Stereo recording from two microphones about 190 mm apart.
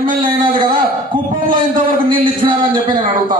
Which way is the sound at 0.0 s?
50° right (ahead or behind).